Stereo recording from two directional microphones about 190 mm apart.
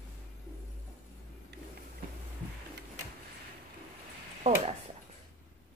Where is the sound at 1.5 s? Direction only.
60° right (ahead or behind).